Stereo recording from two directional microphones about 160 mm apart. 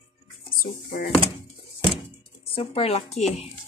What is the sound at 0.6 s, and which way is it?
Speech, 65° left (ahead or behind).